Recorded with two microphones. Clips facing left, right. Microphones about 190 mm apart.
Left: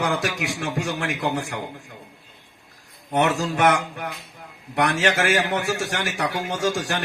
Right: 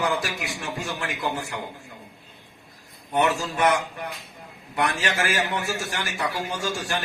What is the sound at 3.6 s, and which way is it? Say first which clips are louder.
A man's voice: left 2 dB; 80° left.